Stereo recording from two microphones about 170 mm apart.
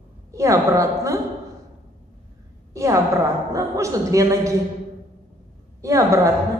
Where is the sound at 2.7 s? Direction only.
20° right (ahead or behind).